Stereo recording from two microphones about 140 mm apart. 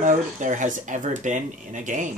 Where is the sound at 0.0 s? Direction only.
65° right (ahead or behind).